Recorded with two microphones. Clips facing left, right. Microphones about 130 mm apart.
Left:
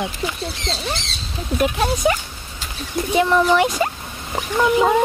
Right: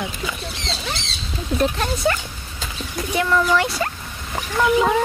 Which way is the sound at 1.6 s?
10° left (ahead or behind).